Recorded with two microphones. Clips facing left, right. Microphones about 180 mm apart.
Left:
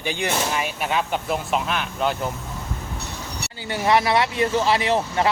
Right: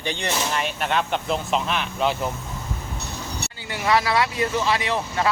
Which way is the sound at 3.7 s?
25° left (ahead or behind).